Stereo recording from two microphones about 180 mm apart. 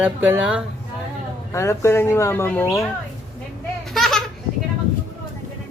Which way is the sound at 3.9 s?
Centre (ahead or behind).